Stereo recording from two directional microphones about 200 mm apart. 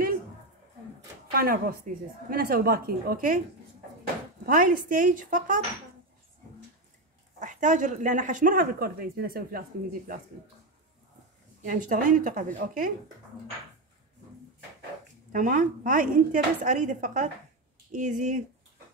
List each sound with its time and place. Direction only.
1.3 s a woman's voice: 50° right (ahead or behind)
4.5 s speech: 45° right (ahead or behind)
7.3 s speech: 40° right (ahead or behind)
11.6 s speech: 40° right (ahead or behind)
15.3 s speech: 40° right (ahead or behind)